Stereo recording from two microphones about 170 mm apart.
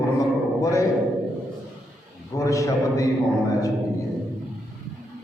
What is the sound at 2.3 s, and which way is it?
Speech, 20° left (ahead or behind).